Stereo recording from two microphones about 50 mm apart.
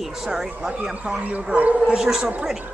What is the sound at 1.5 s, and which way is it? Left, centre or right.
Speech, right.